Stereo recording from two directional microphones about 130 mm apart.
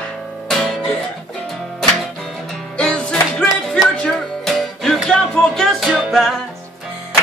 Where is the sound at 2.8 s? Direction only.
5° left (ahead or behind).